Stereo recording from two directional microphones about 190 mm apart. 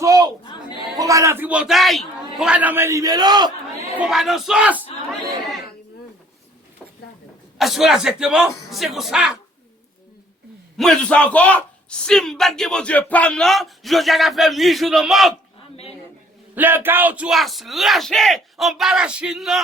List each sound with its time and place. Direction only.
0.0 s a sound: 20° right (ahead or behind)
0.9 s a man's voice: 15° right (ahead or behind)
4.0 s a man's voice: centre (ahead or behind)
7.6 s a man's voice: centre (ahead or behind)
10.8 s a man's voice: 5° left (ahead or behind)
15.7 s a man's voice: 30° left (ahead or behind)
16.6 s a man's voice: 10° right (ahead or behind)